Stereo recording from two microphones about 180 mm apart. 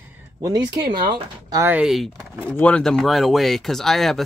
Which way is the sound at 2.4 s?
10° left (ahead or behind).